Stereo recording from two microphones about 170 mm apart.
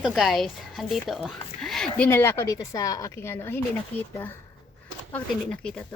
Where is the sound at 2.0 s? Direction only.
15° left (ahead or behind).